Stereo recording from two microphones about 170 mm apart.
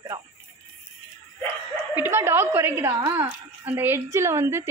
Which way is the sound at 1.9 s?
15° right (ahead or behind).